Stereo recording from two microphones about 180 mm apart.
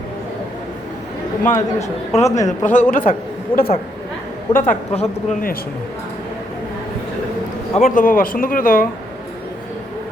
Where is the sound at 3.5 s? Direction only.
30° left (ahead or behind).